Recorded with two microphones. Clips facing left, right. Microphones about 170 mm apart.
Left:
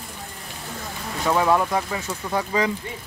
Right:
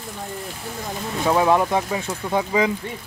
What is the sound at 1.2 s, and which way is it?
Speech, 15° right (ahead or behind).